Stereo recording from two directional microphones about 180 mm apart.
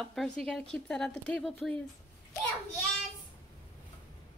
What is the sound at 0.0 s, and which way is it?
Speech, centre (ahead or behind).